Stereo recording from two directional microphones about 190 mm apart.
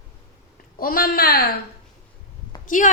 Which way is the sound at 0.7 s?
50° left (ahead or behind).